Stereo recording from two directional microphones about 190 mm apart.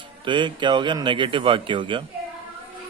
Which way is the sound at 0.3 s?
25° right (ahead or behind).